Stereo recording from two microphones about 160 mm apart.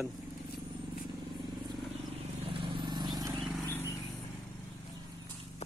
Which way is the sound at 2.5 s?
30° right (ahead or behind).